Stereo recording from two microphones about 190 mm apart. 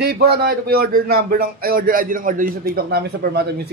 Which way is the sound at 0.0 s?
55° right (ahead or behind).